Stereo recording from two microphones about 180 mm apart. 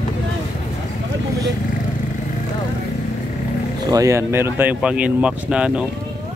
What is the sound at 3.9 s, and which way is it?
Speech, 15° right (ahead or behind).